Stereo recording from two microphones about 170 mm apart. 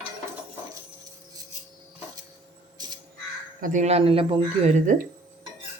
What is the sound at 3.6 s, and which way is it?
Speech, 50° right (ahead or behind).